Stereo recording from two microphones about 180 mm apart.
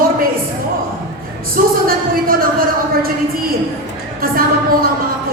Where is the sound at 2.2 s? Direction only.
55° right (ahead or behind).